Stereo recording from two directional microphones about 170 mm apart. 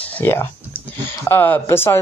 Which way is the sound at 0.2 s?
15° left (ahead or behind).